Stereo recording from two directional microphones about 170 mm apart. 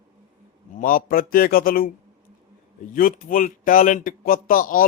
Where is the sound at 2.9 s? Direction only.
55° left (ahead or behind).